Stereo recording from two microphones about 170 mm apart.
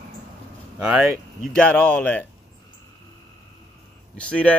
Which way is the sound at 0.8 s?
5° right (ahead or behind).